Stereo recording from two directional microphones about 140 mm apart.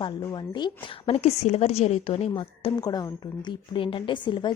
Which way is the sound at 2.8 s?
30° left (ahead or behind).